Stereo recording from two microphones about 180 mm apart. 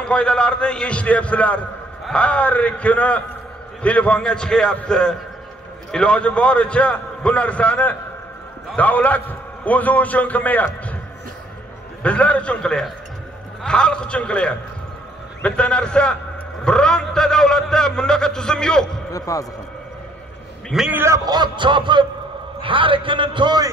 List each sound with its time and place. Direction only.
0.0 s a man's voice: 5° left (ahead or behind)
12.0 s a man's voice: 5° left (ahead or behind)
19.1 s a man's voice: 20° left (ahead or behind)
20.7 s a man's voice: 5° right (ahead or behind); by 23.7 s 25° right (ahead or behind)